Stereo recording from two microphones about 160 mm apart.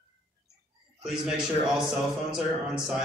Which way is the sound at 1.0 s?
5° right (ahead or behind).